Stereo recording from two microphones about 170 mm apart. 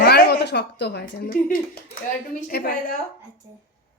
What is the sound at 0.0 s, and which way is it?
A woman's voice, 65° left (ahead or behind).